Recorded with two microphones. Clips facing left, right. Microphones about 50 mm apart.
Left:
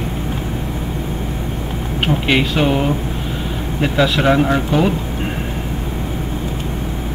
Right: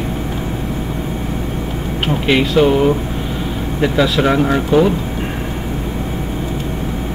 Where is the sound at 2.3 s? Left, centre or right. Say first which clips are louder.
Right 5 dB; centre.